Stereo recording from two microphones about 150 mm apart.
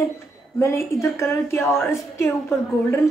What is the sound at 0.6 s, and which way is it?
A woman's voice, 20° left (ahead or behind).